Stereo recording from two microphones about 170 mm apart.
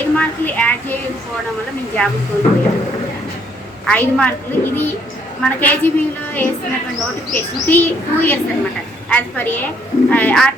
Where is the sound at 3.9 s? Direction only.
5° left (ahead or behind).